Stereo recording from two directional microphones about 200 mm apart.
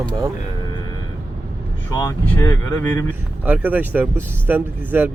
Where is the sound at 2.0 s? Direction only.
15° left (ahead or behind).